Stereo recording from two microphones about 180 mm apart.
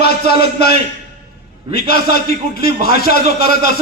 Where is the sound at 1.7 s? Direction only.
60° left (ahead or behind).